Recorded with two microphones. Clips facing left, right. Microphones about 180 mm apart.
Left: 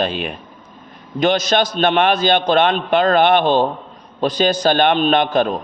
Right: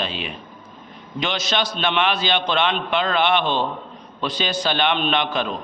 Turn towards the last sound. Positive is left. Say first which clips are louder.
# left 7 dB
turn(degrees=45)  # may be behind; listen again after turning